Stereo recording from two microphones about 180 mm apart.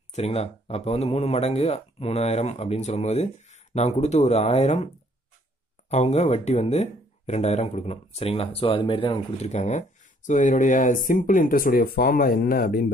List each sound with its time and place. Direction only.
0.1 s speech: 35° left (ahead or behind)
5.9 s speech: 40° left (ahead or behind)